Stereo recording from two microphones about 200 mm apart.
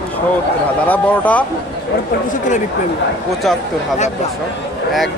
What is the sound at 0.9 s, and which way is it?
Speech, 5° left (ahead or behind).